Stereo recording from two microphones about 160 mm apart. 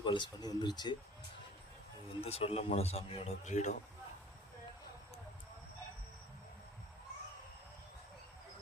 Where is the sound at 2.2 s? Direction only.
40° left (ahead or behind).